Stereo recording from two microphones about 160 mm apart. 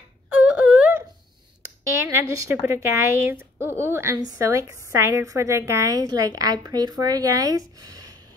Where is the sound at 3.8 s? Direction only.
15° right (ahead or behind).